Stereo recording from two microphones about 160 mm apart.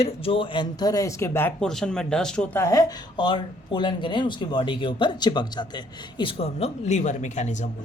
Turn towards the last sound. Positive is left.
turn(degrees=50)  # may be behind; listen again after turning